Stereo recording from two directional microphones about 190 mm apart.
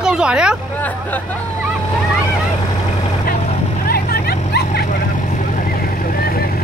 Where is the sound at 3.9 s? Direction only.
55° left (ahead or behind).